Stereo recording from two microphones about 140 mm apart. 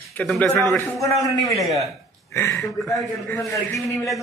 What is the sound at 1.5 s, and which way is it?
Speech, centre (ahead or behind).